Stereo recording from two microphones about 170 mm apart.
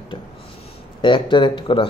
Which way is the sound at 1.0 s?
30° left (ahead or behind).